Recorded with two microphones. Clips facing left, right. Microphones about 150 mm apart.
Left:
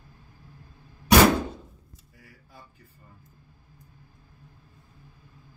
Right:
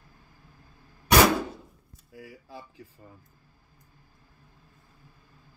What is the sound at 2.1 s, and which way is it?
Speech, 90° right.